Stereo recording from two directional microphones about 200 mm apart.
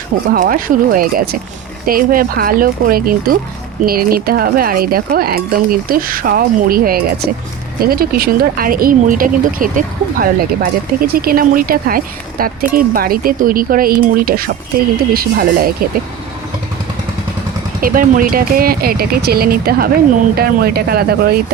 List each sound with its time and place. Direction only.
0.3 s speech: 45° right (ahead or behind)
17.7 s speech: 45° right (ahead or behind)